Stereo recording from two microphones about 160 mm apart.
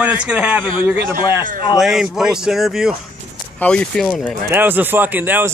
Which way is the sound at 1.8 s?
Centre (ahead or behind).